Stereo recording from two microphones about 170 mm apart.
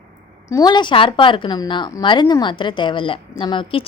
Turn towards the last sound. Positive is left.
turn(degrees=30)  # may be behind; listen again after turning